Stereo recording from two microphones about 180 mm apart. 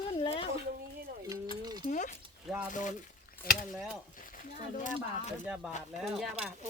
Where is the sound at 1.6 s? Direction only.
25° right (ahead or behind).